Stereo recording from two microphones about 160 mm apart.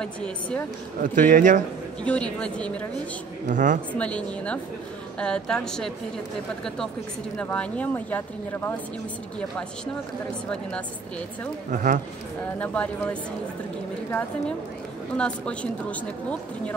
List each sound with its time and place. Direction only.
0.0 s a woman's voice: 5° left (ahead or behind)
1.0 s a man's voice: 55° right (ahead or behind)
2.0 s a woman's voice: 5° left (ahead or behind)
3.4 s a man's voice: 55° right (ahead or behind)
3.9 s a woman's voice: 10° left (ahead or behind)
7.3 s a woman's voice: 10° left (ahead or behind)
11.7 s a man's voice: 55° right (ahead or behind)
12.5 s a woman's voice: 10° left (ahead or behind)
15.1 s a woman's voice: 5° left (ahead or behind)